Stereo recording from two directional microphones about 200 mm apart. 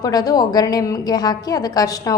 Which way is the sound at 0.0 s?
20° left (ahead or behind).